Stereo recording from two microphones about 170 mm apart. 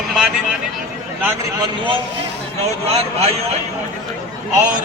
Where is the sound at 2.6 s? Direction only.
40° right (ahead or behind).